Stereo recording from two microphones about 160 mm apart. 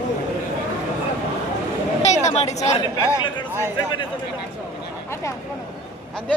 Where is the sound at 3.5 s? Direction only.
15° right (ahead or behind).